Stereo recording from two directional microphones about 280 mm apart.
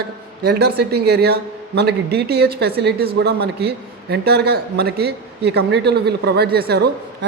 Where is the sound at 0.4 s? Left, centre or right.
Right.